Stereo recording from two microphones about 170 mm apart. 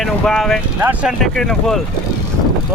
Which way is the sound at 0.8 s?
10° right (ahead or behind).